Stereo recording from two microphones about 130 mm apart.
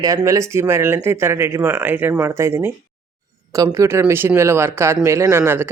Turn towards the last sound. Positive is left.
turn(degrees=-15)  # may be behind; listen again after turning